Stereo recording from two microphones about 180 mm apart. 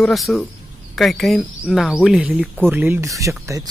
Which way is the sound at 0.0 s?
Centre (ahead or behind).